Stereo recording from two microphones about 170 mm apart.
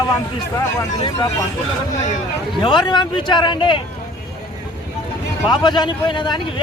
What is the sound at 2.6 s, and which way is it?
Speech, 25° left (ahead or behind).